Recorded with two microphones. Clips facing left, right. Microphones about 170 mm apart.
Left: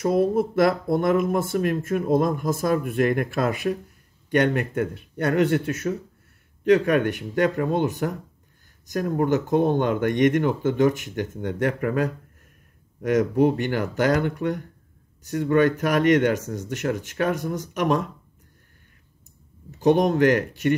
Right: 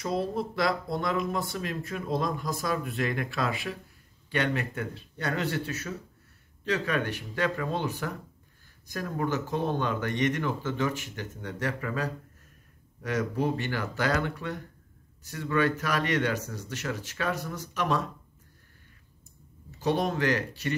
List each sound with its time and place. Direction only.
0.0 s speech: 50° left (ahead or behind)
20.1 s speech: 50° left (ahead or behind)